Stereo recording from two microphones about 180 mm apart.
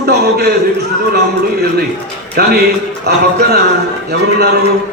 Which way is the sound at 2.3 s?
60° right (ahead or behind).